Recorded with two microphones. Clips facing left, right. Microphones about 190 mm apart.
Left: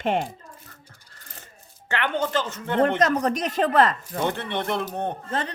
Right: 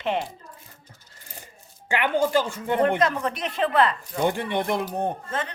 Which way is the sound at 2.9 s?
45° left (ahead or behind).